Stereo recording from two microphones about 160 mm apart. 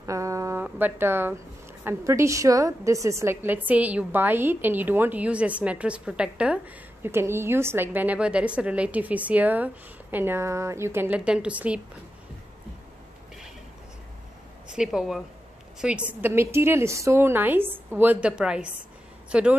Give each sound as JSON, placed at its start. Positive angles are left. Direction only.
{"t": 0.0, "sound": "a sound", "side_deg": -20}
{"t": 0.7, "sound": "a woman's voice", "side_deg": -10}
{"t": 14.7, "sound": "a woman's voice", "side_deg": -5}